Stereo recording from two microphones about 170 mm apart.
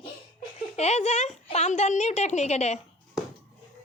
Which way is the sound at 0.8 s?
40° left (ahead or behind).